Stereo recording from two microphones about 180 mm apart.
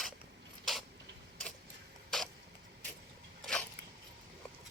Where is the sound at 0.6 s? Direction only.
Centre (ahead or behind).